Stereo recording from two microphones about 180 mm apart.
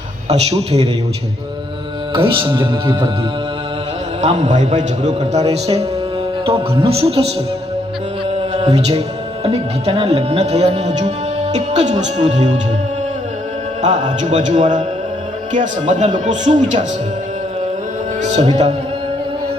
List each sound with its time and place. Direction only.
0.3 s speech: 35° right (ahead or behind)
2.1 s speech: 30° right (ahead or behind)
4.2 s speech: 40° right (ahead or behind)
8.5 s music: 35° right (ahead or behind)
9.5 s speech: 35° right (ahead or behind)
13.8 s speech: 40° right (ahead or behind)
18.2 s a man's voice: 40° right (ahead or behind)